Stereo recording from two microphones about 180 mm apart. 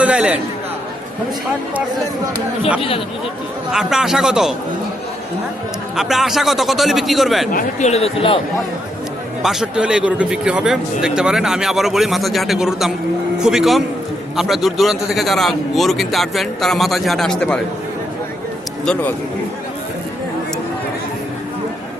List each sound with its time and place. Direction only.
0.0 s a man's voice: 5° right (ahead or behind)
3.7 s a man's voice: 5° right (ahead or behind)
6.0 s a man's voice: centre (ahead or behind)
7.5 s speech: 40° left (ahead or behind)
9.4 s a man's voice: centre (ahead or behind)